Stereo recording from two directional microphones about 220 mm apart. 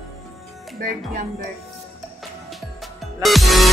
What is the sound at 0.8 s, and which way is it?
Speech, 40° right (ahead or behind).